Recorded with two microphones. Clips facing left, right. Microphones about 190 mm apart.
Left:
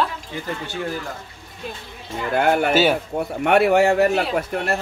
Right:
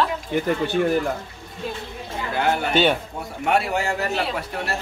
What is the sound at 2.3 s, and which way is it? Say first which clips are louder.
Speech: left 3 dB; 55° left (ahead or behind).